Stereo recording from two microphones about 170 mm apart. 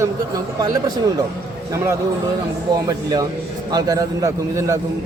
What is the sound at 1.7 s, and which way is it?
A man's voice, 15° right (ahead or behind).